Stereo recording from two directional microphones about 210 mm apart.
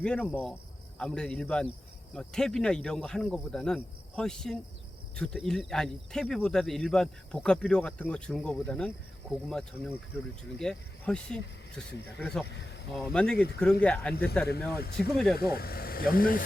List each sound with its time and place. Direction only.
0.0 s speech: 5° left (ahead or behind)
11.9 s speech: 50° left (ahead or behind)
12.2 s speech: 5° left (ahead or behind)
12.5 s speech: 55° left (ahead or behind)
13.2 s speech: 5° left (ahead or behind)
14.7 s speech: 50° left (ahead or behind)
15.1 s speech: centre (ahead or behind)
15.4 s speech: 45° left (ahead or behind)